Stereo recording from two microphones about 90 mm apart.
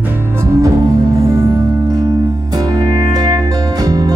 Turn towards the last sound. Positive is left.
turn(degrees=-45)  # may be behind; listen again after turning